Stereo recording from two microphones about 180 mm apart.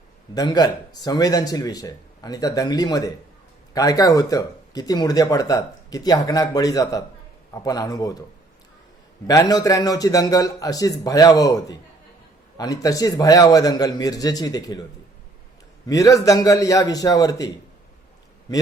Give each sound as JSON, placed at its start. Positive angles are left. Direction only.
{"t": 0.3, "sound": "speech", "side_deg": 20}
{"t": 9.2, "sound": "speech", "side_deg": 20}
{"t": 15.9, "sound": "speech", "side_deg": 20}